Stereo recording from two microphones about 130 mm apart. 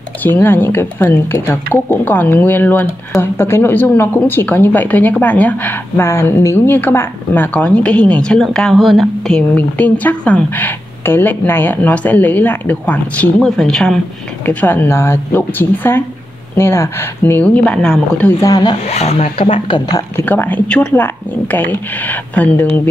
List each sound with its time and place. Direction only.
0.2 s speech: 15° left (ahead or behind); by 9.4 s centre (ahead or behind)
9.6 s speech: 10° left (ahead or behind)
18.4 s speech: 30° left (ahead or behind)
18.9 s speech: 55° left (ahead or behind)
19.9 s speech: 20° left (ahead or behind)